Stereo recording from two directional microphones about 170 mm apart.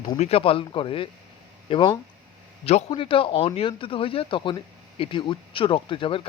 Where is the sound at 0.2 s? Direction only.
35° left (ahead or behind).